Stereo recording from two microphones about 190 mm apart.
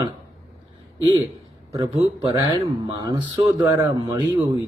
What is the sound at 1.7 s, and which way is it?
A man's voice, 25° right (ahead or behind).